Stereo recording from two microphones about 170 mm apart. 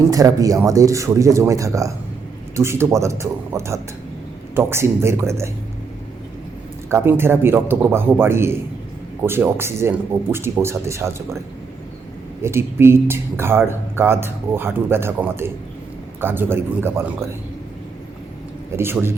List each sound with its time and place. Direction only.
0.1 s speech: 20° right (ahead or behind)
6.9 s speech: 15° right (ahead or behind)
12.4 s speech: 15° right (ahead or behind)
18.8 s speech: 15° right (ahead or behind)